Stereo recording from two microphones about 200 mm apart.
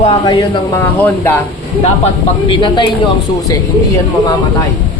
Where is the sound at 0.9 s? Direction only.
10° left (ahead or behind).